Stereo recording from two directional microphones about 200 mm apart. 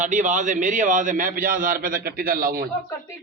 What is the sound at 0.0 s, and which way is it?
A man's voice, 40° right (ahead or behind).